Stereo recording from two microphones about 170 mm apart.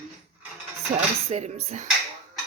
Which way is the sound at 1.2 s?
40° right (ahead or behind).